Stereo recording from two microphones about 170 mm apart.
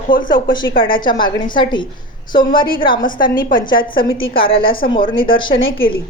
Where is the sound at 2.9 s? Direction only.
55° left (ahead or behind).